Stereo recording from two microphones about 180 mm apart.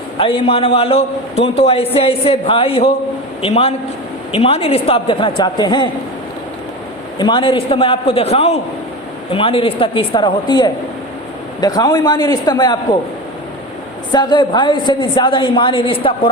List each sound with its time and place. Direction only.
0.2 s a man's voice: 30° left (ahead or behind)
7.2 s a man's voice: 25° left (ahead or behind)
14.1 s a woman's voice: 25° left (ahead or behind)